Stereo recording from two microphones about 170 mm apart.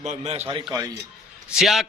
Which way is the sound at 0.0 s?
40° right (ahead or behind).